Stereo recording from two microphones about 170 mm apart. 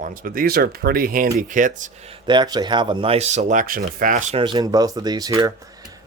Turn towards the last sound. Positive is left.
turn(degrees=-20)  # may be behind; listen again after turning